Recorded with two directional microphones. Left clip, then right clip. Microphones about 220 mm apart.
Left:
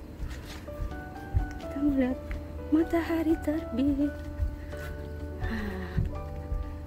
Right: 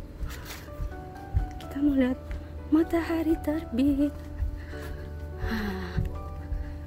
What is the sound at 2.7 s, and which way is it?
Speech, 15° right (ahead or behind).